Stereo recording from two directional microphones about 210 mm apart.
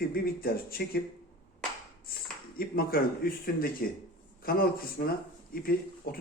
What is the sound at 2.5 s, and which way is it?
Speech, 45° left (ahead or behind).